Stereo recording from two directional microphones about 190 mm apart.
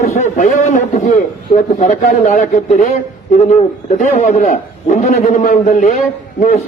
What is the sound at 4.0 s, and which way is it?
A man's voice, 40° left (ahead or behind).